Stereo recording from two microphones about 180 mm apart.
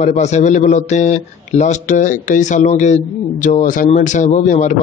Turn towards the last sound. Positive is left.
turn(degrees=40)  # may be behind; listen again after turning